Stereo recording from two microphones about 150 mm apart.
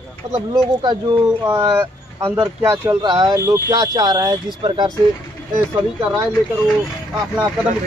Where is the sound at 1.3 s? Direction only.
15° right (ahead or behind).